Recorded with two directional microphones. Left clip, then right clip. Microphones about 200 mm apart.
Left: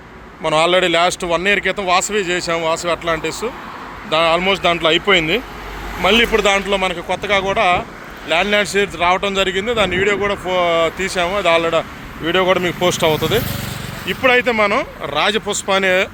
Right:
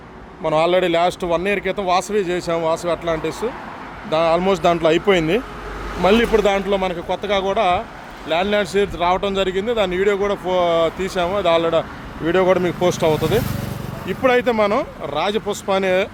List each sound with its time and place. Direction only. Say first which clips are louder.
0.4 s speech: left 2 dB; 10° right (ahead or behind)
4.4 s speech: left 1 dB; 30° right (ahead or behind); by 16.0 s 10° right (ahead or behind)